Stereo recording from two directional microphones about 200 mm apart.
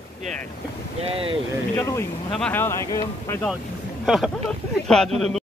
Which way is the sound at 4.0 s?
Centre (ahead or behind).